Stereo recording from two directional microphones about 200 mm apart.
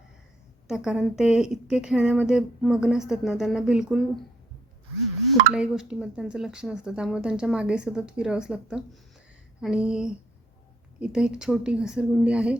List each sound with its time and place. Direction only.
0.7 s speech: 5° right (ahead or behind)
5.3 s speech: centre (ahead or behind)